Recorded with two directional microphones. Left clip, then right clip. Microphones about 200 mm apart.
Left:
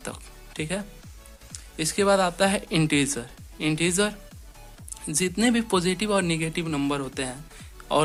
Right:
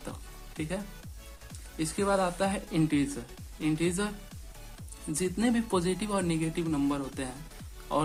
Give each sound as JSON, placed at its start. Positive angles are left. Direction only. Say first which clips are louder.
{"t": 0.0, "sound": "music", "louder": "left 6 dB", "side_deg": 30}
{"t": 1.8, "sound": "speech", "louder": "left 7 dB", "side_deg": 30}
{"t": 5.1, "sound": "speech", "louder": "left 6 dB", "side_deg": 25}